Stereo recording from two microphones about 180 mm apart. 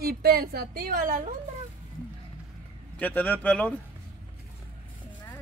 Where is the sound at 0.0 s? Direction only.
60° right (ahead or behind).